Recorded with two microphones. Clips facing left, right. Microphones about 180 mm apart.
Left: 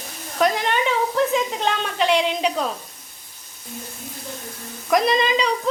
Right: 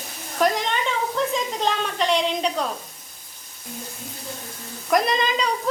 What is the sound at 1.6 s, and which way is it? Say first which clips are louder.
Speech: left 1 dB; centre (ahead or behind).